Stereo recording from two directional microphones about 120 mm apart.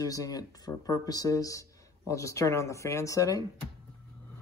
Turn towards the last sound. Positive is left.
turn(degrees=30)  # may be behind; listen again after turning